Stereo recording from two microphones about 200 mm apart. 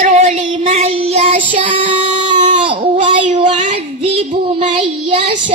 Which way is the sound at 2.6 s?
25° right (ahead or behind).